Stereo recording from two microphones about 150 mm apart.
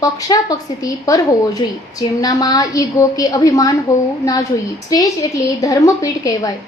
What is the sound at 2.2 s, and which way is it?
A woman's voice, 25° left (ahead or behind).